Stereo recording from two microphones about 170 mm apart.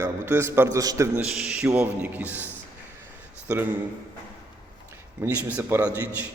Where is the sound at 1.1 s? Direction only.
5° right (ahead or behind).